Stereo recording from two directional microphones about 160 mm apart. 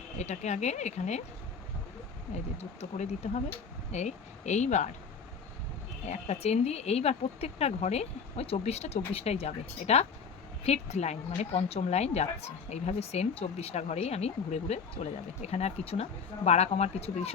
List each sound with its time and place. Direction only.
0.2 s speech: 45° left (ahead or behind)
2.3 s speech: 45° left (ahead or behind)
6.1 s speech: 40° left (ahead or behind)